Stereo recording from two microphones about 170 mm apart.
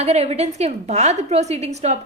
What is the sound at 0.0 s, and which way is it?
A woman's voice, 40° right (ahead or behind).